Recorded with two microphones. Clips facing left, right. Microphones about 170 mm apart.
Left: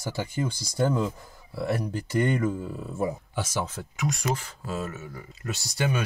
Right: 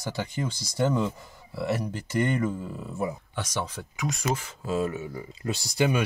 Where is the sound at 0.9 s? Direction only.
Centre (ahead or behind).